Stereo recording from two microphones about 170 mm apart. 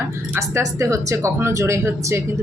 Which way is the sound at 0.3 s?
20° right (ahead or behind).